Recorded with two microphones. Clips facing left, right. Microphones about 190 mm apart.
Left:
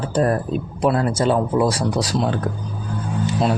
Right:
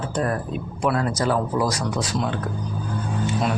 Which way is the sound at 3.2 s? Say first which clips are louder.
Left 4 dB; 30° left (ahead or behind).